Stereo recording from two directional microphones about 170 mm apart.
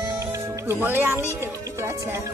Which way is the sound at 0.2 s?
15° right (ahead or behind).